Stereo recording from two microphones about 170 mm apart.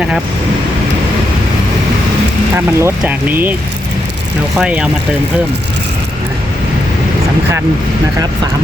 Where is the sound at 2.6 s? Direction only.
10° right (ahead or behind).